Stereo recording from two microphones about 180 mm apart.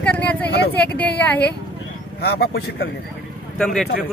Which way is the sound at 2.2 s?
60° left (ahead or behind).